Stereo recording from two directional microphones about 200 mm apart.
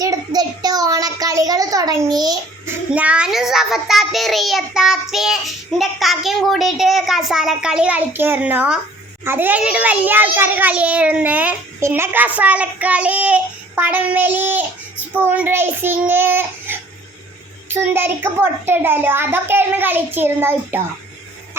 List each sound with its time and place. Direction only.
0.0 s child singing: 20° right (ahead or behind)
2.9 s child singing: 5° right (ahead or behind)
9.2 s a child's voice: 10° right (ahead or behind)